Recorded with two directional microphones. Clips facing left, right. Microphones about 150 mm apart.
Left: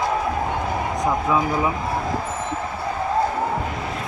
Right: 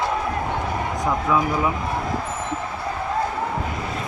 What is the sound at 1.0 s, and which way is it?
Speech, 20° left (ahead or behind).